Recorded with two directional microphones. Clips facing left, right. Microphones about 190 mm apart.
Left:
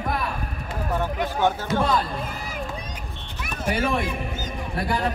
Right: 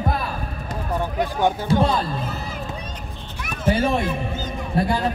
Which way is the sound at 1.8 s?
30° right (ahead or behind).